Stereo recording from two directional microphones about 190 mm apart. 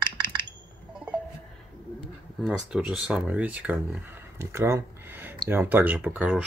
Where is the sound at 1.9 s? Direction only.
5° right (ahead or behind).